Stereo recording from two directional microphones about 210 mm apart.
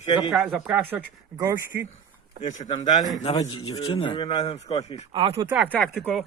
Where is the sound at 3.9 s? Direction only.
25° left (ahead or behind).